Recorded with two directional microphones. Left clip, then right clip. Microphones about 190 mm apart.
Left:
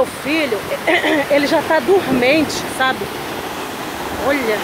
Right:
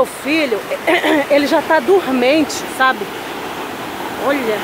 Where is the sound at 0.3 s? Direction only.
15° right (ahead or behind).